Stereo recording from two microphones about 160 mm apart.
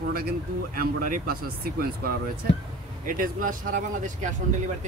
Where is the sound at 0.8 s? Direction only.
60° right (ahead or behind).